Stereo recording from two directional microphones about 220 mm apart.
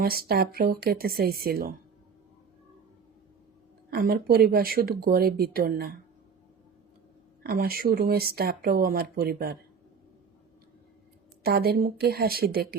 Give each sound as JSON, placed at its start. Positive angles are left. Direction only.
{"t": 0.0, "sound": "speech", "side_deg": -45}
{"t": 3.8, "sound": "speech", "side_deg": -45}
{"t": 7.4, "sound": "speech", "side_deg": -40}
{"t": 11.4, "sound": "speech", "side_deg": -45}